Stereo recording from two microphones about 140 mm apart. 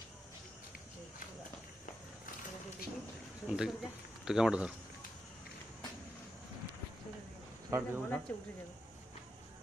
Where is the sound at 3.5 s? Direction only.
5° right (ahead or behind).